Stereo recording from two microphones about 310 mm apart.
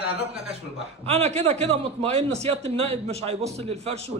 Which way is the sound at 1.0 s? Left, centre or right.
Right.